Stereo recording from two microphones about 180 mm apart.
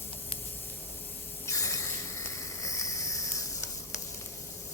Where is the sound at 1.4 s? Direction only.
20° left (ahead or behind).